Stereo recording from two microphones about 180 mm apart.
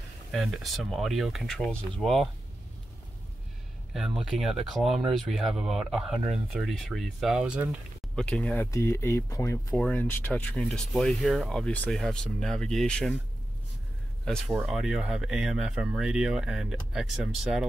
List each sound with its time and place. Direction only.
0.3 s speech: centre (ahead or behind)
3.9 s speech: centre (ahead or behind)
8.2 s speech: 5° left (ahead or behind)
8.7 s speech: 15° left (ahead or behind)
14.7 s speech: 5° right (ahead or behind)